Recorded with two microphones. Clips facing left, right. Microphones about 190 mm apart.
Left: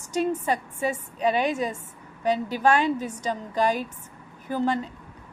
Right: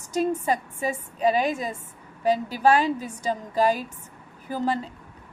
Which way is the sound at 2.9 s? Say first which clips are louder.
Even; 10° right (ahead or behind).